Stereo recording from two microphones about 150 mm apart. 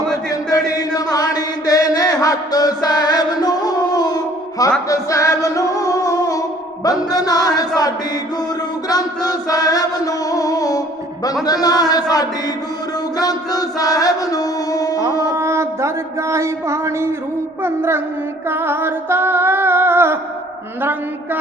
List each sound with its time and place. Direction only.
0.3 s chant: 25° left (ahead or behind)
4.9 s singing: 20° left (ahead or behind)
6.8 s music: 25° left (ahead or behind)
8.9 s music: 25° left (ahead or behind)
15.4 s a sound: 20° right (ahead or behind)
18.4 s female singing: 15° right (ahead or behind)